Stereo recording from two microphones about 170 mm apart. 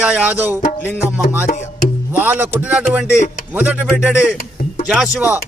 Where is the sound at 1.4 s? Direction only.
45° left (ahead or behind).